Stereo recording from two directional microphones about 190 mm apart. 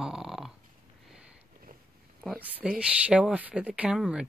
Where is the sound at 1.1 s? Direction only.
5° right (ahead or behind).